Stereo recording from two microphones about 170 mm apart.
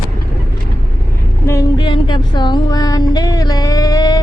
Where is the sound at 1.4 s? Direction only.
20° left (ahead or behind).